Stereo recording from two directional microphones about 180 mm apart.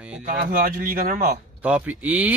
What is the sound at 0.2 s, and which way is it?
Speech, 45° right (ahead or behind).